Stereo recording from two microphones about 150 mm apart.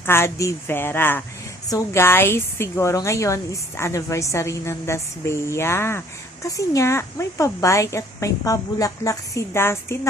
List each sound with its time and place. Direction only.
0.0 s a woman's voice: 15° left (ahead or behind)